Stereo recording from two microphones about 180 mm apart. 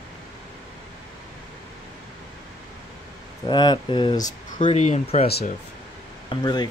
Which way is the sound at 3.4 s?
25° left (ahead or behind).